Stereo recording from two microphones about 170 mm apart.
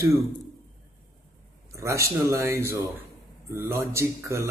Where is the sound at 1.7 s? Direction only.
15° right (ahead or behind).